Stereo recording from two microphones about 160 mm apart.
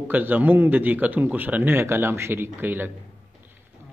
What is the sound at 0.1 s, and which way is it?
Speech, 10° right (ahead or behind).